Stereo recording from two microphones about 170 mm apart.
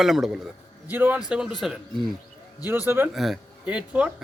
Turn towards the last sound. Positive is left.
turn(degrees=-5)  # may be behind; listen again after turning